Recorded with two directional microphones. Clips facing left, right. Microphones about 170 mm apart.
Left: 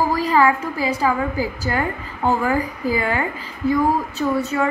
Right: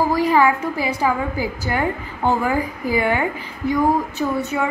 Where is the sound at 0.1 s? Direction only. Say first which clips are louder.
Right 1 dB; 15° right (ahead or behind).